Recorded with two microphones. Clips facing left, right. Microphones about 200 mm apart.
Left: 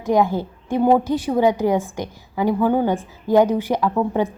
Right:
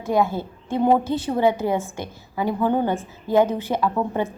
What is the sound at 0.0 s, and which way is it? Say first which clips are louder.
A woman's voice: left 3 dB; 15° left (ahead or behind).